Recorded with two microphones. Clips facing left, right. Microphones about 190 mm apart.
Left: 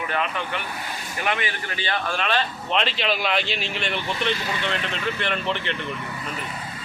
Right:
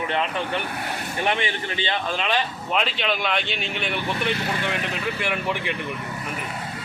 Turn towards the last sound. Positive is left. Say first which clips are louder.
# even
turn(degrees=-10)  # may be behind; listen again after turning